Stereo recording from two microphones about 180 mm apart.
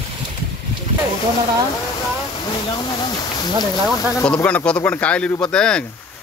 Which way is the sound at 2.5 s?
30° left (ahead or behind).